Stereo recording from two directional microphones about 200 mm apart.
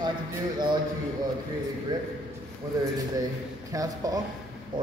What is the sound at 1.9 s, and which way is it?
Speech, 20° right (ahead or behind).